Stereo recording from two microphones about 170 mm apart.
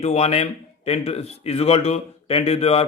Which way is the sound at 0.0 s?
40° left (ahead or behind).